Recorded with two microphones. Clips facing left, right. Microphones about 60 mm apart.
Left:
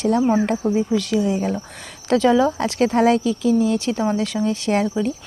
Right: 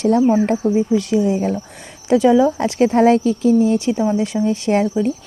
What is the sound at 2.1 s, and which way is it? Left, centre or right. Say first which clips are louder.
Speech: right 3 dB; centre.